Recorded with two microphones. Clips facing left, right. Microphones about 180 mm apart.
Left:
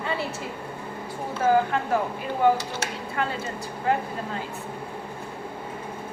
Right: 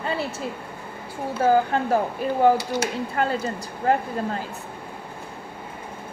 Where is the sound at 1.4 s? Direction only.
30° right (ahead or behind).